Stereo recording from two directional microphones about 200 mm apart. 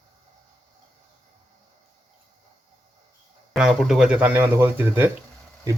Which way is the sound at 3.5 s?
Centre (ahead or behind).